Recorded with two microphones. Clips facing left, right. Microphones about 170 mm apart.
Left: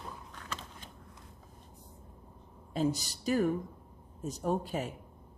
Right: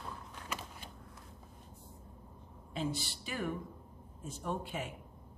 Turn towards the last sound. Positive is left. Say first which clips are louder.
# left 6 dB
turn(degrees=40)  # may be behind; listen again after turning